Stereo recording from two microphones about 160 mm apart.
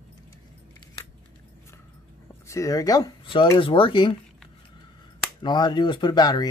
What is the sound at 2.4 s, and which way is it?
Speech, 20° left (ahead or behind).